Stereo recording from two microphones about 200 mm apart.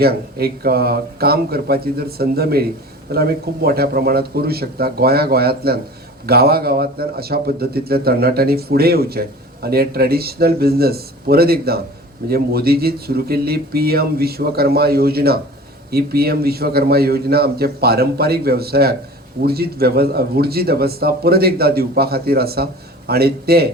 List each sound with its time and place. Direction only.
0.0 s a man's voice: 50° right (ahead or behind)